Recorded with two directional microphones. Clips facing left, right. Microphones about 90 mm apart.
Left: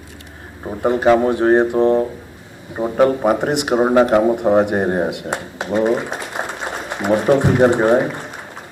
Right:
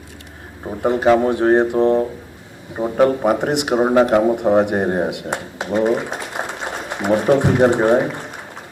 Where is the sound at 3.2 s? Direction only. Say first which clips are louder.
Left 1 dB; 40° left (ahead or behind).